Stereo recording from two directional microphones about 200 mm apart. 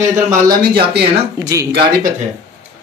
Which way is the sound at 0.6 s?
50° right (ahead or behind).